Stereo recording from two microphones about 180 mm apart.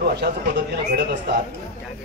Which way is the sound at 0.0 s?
65° right (ahead or behind).